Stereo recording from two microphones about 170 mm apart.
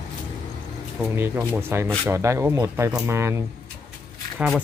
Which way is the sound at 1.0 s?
15° right (ahead or behind).